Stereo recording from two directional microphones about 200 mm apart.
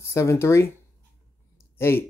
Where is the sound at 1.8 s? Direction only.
10° left (ahead or behind).